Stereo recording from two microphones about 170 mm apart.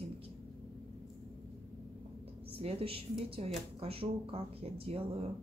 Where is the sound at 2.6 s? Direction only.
35° right (ahead or behind).